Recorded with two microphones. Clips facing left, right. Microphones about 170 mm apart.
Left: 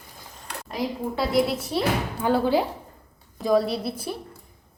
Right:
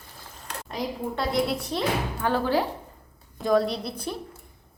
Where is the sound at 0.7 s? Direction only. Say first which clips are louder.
Left 2 dB; 5° left (ahead or behind).